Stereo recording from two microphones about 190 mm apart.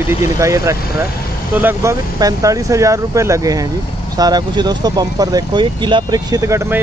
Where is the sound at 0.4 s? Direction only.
15° right (ahead or behind).